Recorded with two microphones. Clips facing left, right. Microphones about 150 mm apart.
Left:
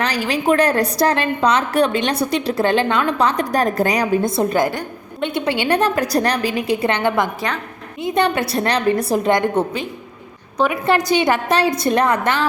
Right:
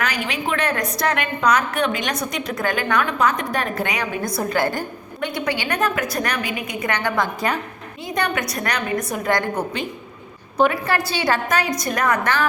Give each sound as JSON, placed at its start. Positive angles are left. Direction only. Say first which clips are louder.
{"t": 0.0, "sound": "a woman's voice", "louder": "left 5 dB", "side_deg": 35}
{"t": 4.2, "sound": "a woman's voice", "louder": "left 4 dB", "side_deg": 25}
{"t": 10.7, "sound": "a woman's voice", "louder": "left 6 dB", "side_deg": 15}